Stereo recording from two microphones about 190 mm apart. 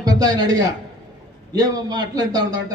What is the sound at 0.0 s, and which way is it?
A man's voice, 20° right (ahead or behind).